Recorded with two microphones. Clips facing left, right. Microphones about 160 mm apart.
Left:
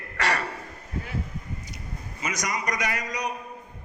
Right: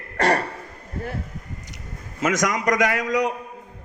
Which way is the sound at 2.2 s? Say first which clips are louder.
Right 9 dB; 90° right.